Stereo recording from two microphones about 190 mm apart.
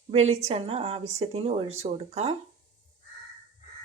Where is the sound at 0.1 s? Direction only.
35° right (ahead or behind).